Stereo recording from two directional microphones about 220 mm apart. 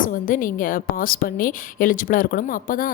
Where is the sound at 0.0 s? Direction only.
40° left (ahead or behind).